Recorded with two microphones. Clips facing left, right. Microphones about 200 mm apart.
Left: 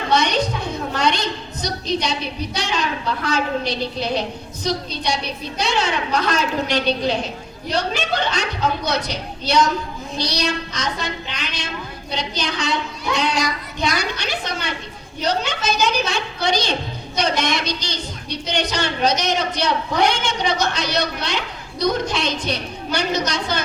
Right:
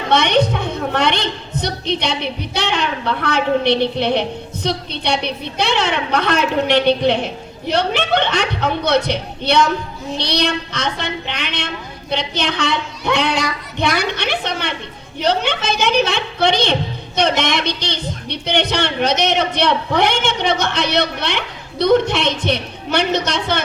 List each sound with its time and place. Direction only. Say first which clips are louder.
0.1 s a woman's voice: right 5 dB; 60° right (ahead or behind)